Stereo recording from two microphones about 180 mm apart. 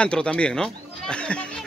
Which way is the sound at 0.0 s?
5° left (ahead or behind).